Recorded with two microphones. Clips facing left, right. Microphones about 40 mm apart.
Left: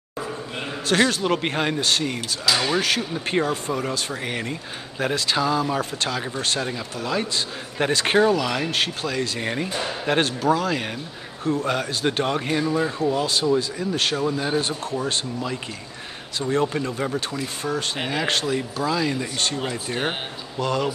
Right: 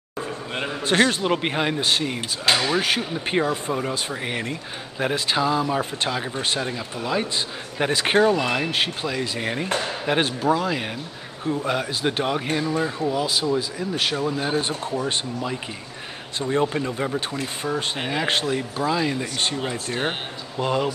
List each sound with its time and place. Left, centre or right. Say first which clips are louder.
0.6 s a sound: right 1 dB; right
1.2 s speech: even; centre
2.5 s speech: right 2 dB; right
2.8 s speech: even; centre
14.5 s speech: even; centre
16.4 s speech: even; centre
18.1 s speech: even; centre
19.9 s speech: even; centre
20.5 s speech: right 1 dB; centre